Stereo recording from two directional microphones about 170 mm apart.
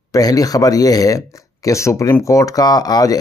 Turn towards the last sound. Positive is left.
turn(degrees=20)  # may be behind; listen again after turning